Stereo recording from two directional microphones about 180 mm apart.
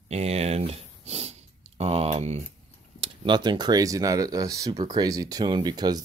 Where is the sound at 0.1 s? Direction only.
35° right (ahead or behind).